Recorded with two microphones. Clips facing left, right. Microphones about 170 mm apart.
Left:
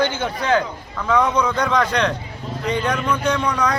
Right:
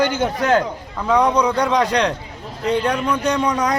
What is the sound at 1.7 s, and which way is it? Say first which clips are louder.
Speech: right 2 dB; 35° right (ahead or behind).